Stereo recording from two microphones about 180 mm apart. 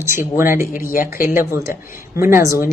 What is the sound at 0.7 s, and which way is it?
Speech, 50° left (ahead or behind).